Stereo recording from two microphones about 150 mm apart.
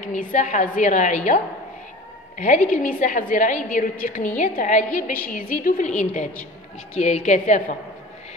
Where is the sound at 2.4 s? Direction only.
60° left (ahead or behind).